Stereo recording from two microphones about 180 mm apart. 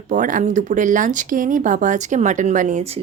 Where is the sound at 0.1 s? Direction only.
45° right (ahead or behind).